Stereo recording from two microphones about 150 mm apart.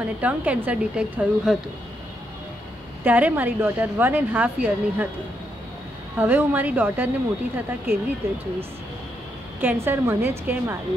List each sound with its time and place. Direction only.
0.0 s a woman's voice: 10° right (ahead or behind)
3.0 s a woman's voice: 10° right (ahead or behind)
6.1 s a woman's voice: 10° right (ahead or behind)
9.6 s a woman's voice: 15° right (ahead or behind)